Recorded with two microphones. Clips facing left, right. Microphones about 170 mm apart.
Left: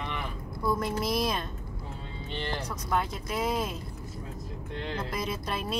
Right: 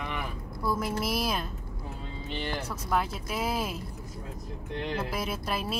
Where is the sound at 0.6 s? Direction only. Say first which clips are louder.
Left 1 dB; 5° right (ahead or behind).